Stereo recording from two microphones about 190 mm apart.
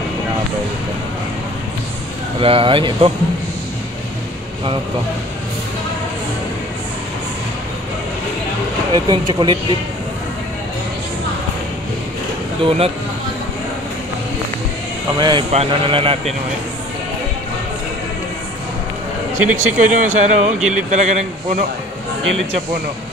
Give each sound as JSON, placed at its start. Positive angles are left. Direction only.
{"t": 2.4, "sound": "a man's voice", "side_deg": -30}
{"t": 8.9, "sound": "a man's voice", "side_deg": -25}
{"t": 12.6, "sound": "speech", "side_deg": -30}
{"t": 15.1, "sound": "a man's voice", "side_deg": -25}
{"t": 19.5, "sound": "speech", "side_deg": -40}